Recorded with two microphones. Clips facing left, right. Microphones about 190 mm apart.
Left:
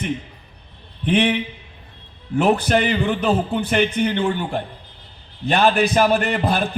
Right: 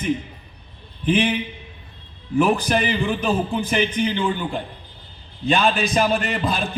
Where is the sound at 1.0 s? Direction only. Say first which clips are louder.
Left 1 dB; 70° left (ahead or behind).